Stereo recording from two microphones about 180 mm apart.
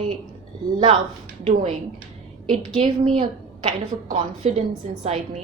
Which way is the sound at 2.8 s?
35° right (ahead or behind).